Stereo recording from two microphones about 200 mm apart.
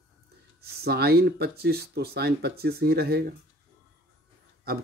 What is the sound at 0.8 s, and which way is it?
Speech, 50° right (ahead or behind).